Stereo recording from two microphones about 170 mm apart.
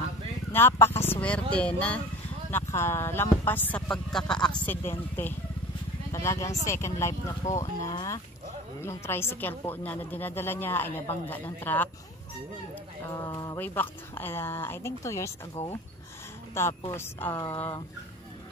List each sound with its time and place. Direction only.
0.5 s speech: 15° left (ahead or behind)
13.2 s speech: 20° left (ahead or behind)
16.6 s speech: 15° left (ahead or behind)